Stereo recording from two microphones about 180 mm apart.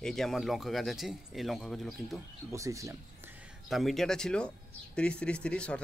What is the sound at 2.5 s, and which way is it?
Speech, 15° right (ahead or behind).